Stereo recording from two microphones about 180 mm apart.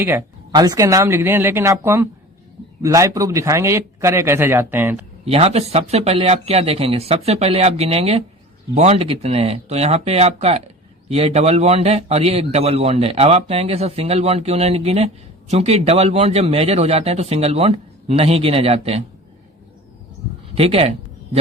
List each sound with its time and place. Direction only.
0.0 s speech: 15° right (ahead or behind)
5.2 s a man's voice: 35° right (ahead or behind)
20.6 s a man's voice: 35° right (ahead or behind)